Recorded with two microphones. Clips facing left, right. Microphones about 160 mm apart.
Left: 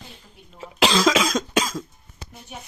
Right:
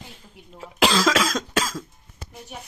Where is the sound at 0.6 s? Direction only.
5° right (ahead or behind).